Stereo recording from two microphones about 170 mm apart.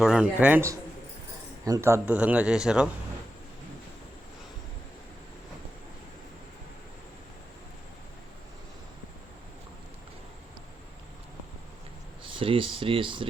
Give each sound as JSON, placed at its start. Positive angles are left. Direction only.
{"t": 0.0, "sound": "a man's voice", "side_deg": -5}
{"t": 12.2, "sound": "speech", "side_deg": -30}